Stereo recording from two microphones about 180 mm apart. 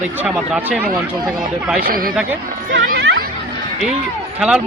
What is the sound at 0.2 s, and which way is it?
Speech, 5° right (ahead or behind).